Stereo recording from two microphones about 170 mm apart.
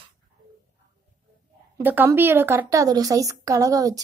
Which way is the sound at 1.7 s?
10° right (ahead or behind).